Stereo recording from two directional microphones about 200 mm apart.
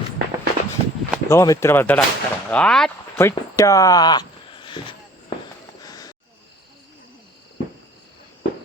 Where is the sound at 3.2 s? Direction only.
15° left (ahead or behind).